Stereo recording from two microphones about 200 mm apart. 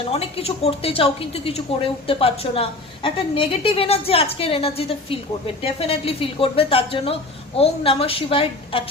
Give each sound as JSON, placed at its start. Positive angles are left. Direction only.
{"t": 0.0, "sound": "a woman's voice", "side_deg": 30}